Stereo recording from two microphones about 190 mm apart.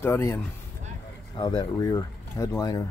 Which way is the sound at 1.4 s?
25° left (ahead or behind).